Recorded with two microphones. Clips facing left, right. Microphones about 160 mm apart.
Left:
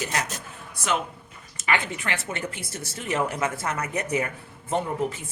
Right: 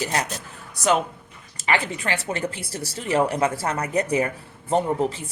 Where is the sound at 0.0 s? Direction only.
35° right (ahead or behind).